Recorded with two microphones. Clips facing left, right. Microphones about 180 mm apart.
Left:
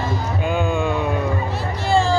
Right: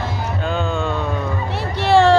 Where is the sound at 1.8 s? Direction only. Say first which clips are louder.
Right 6 dB; 70° right (ahead or behind).